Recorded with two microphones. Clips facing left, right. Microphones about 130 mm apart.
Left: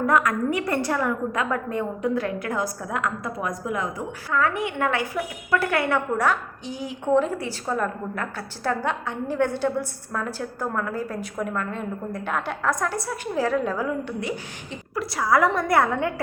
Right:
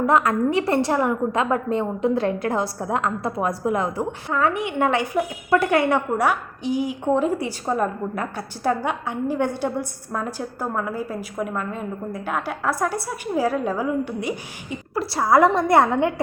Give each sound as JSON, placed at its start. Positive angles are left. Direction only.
{"t": 0.0, "sound": "a woman's voice", "side_deg": -25}
{"t": 14.9, "sound": "a woman's voice", "side_deg": -30}